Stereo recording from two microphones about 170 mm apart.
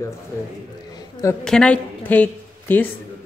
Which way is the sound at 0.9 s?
25° left (ahead or behind).